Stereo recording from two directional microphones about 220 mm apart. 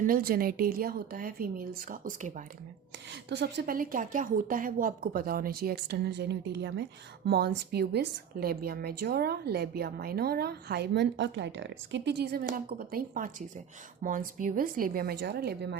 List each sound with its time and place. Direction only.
0.0 s a woman's voice: 40° right (ahead or behind)
3.2 s a woman's voice: 50° right (ahead or behind)